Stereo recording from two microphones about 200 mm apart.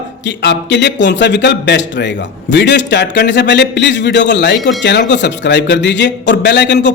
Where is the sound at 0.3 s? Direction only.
60° left (ahead or behind).